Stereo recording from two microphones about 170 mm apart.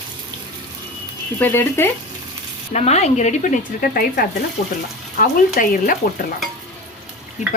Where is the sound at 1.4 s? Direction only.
15° left (ahead or behind).